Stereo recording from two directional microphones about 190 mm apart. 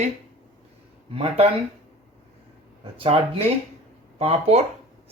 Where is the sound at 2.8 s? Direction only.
30° right (ahead or behind).